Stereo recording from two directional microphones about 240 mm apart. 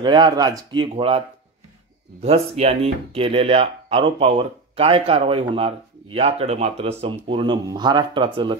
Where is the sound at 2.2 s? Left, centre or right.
Right.